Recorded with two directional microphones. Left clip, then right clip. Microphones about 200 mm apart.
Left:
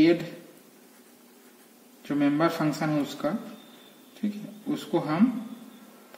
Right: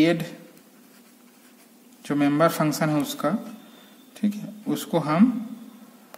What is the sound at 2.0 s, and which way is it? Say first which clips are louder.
Speech: right 4 dB; 45° right (ahead or behind).